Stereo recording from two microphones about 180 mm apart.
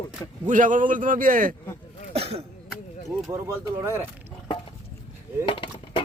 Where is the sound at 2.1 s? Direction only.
35° right (ahead or behind).